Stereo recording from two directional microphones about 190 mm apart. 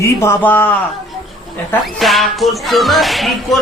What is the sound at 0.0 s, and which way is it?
Speech, 15° left (ahead or behind).